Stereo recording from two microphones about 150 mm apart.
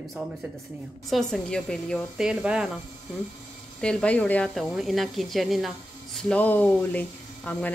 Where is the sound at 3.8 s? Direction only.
5° left (ahead or behind).